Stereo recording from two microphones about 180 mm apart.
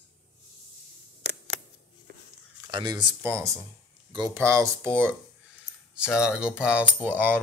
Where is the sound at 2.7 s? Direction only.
25° right (ahead or behind).